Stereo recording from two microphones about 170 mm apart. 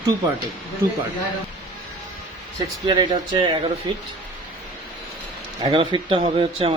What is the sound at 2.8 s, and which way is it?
A man's voice, 25° right (ahead or behind).